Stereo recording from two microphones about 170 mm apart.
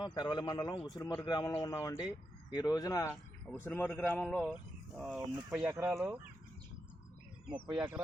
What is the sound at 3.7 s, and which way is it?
A man's voice, 10° left (ahead or behind).